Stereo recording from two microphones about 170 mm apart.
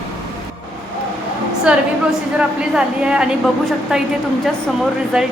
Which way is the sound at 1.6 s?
5° right (ahead or behind).